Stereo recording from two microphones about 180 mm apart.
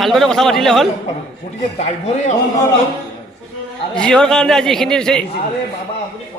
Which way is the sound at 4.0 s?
5° left (ahead or behind).